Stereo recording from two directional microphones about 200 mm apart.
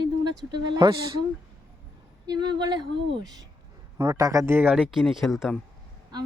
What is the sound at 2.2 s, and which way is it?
Speech, 20° right (ahead or behind).